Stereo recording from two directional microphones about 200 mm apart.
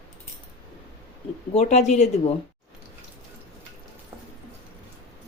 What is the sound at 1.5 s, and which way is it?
Speech, 35° left (ahead or behind).